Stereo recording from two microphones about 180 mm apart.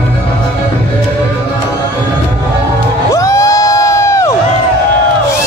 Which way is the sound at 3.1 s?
15° left (ahead or behind).